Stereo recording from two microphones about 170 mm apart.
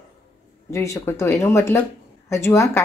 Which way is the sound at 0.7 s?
15° left (ahead or behind).